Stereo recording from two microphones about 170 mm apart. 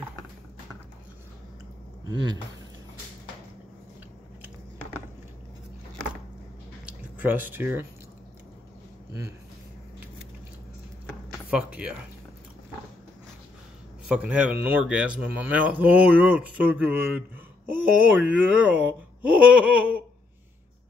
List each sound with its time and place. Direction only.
6.9 s a sound: 10° right (ahead or behind)
11.5 s a man's voice: 5° right (ahead or behind)
14.0 s a man's voice: 5° right (ahead or behind)